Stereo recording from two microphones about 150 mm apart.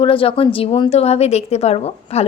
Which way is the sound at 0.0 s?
35° left (ahead or behind).